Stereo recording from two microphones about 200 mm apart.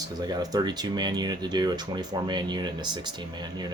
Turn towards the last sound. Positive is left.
turn(degrees=-20)  # may be behind; listen again after turning